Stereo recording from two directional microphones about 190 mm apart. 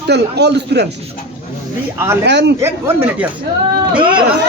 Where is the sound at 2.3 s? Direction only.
65° right (ahead or behind).